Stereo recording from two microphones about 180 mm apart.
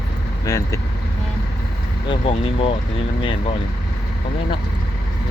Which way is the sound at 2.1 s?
30° left (ahead or behind).